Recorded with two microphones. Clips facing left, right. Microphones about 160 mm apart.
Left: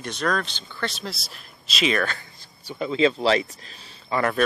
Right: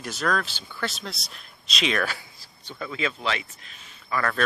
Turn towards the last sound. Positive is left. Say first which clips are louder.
# left 4 dB
turn(degrees=25)  # may be behind; listen again after turning